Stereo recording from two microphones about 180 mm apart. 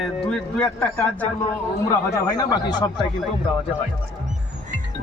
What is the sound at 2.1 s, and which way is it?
Speech, 20° left (ahead or behind).